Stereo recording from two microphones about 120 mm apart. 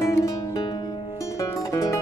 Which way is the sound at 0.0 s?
25° left (ahead or behind).